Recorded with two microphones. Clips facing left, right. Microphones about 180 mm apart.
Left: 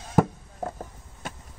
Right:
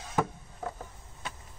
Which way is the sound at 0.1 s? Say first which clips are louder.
Left 8 dB; 45° left (ahead or behind).